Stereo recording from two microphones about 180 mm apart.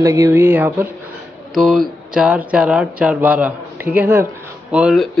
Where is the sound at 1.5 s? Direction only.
Centre (ahead or behind).